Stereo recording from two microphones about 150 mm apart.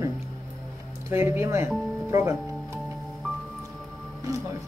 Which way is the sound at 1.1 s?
15° right (ahead or behind).